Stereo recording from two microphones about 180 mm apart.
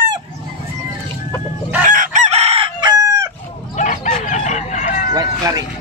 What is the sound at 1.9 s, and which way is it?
Chicken, 45° right (ahead or behind).